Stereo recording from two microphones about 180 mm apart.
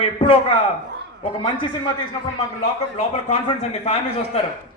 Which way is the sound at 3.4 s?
35° left (ahead or behind).